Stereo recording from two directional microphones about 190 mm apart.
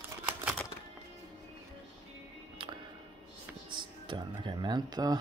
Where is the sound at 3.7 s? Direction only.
25° right (ahead or behind).